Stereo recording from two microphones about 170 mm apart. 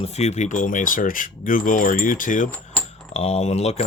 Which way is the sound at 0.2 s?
40° left (ahead or behind).